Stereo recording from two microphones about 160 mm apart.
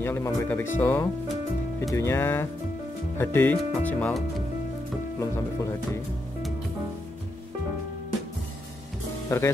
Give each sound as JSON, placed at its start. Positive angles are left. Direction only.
{"t": 0.0, "sound": "speech", "side_deg": 15}
{"t": 5.2, "sound": "speech", "side_deg": 20}
{"t": 9.3, "sound": "speech", "side_deg": 20}